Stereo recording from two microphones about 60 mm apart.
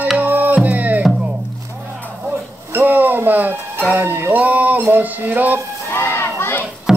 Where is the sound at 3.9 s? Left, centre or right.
Right.